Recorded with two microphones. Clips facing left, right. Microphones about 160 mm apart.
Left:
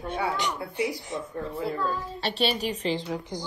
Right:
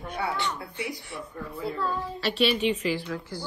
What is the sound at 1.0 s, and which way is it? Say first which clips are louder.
Speech: left 5 dB; 20° left (ahead or behind).